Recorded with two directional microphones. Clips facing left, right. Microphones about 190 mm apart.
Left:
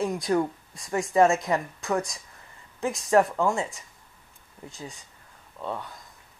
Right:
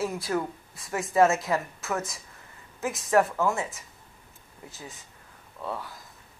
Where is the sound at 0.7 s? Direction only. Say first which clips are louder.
Left 1 dB; centre (ahead or behind).